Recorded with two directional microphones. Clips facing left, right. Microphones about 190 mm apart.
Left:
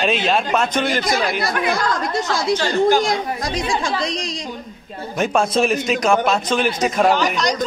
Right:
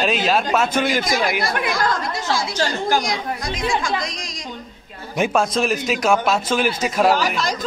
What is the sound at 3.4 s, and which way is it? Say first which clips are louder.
Speech: left 1 dB; 35° left (ahead or behind).